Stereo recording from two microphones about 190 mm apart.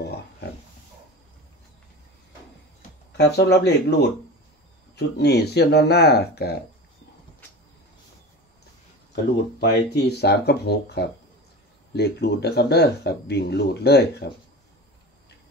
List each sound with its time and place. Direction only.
3.2 s speech: 60° left (ahead or behind)
4.9 s speech: 60° left (ahead or behind)
9.1 s speech: 60° left (ahead or behind)